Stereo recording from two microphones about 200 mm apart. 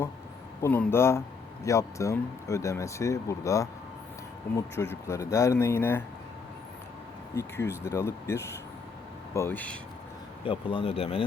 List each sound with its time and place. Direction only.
0.6 s speech: 10° left (ahead or behind)
7.3 s speech: 10° left (ahead or behind)
10.4 s speech: 25° left (ahead or behind)